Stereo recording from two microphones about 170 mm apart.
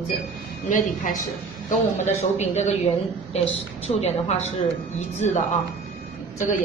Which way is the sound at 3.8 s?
40° left (ahead or behind).